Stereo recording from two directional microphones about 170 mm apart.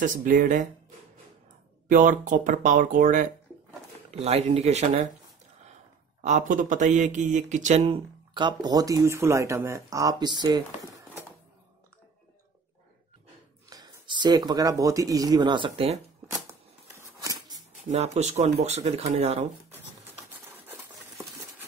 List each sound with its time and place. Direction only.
0.0 s speech: 50° right (ahead or behind)
1.9 s speech: 50° right (ahead or behind)
4.1 s speech: 40° right (ahead or behind)
6.2 s speech: 45° right (ahead or behind); by 11.1 s 25° right (ahead or behind)
13.7 s speech: 20° right (ahead or behind)
17.2 s a sound: 20° right (ahead or behind)
17.9 s speech: 40° right (ahead or behind)